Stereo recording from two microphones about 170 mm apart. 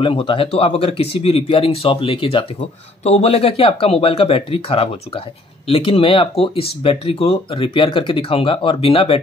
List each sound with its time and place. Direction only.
0.0 s speech: 30° left (ahead or behind)